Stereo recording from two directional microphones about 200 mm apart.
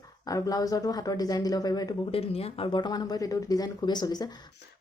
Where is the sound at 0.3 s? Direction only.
15° left (ahead or behind).